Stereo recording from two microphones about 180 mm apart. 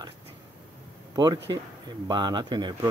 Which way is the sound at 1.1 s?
25° right (ahead or behind).